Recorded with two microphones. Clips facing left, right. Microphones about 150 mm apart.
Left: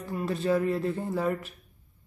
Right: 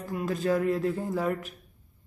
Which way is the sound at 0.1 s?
Centre (ahead or behind).